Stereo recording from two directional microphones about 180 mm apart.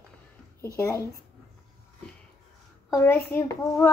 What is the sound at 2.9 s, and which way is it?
A child's voice, 10° left (ahead or behind).